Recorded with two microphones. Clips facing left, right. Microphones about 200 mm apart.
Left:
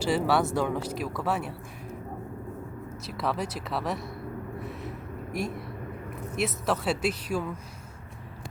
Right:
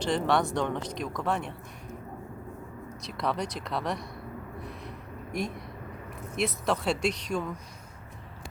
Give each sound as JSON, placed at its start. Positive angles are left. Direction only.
{"t": 0.0, "sound": "speech", "side_deg": 5}
{"t": 3.0, "sound": "speech", "side_deg": 5}
{"t": 4.6, "sound": "a sound", "side_deg": 0}
{"t": 6.3, "sound": "speech", "side_deg": 5}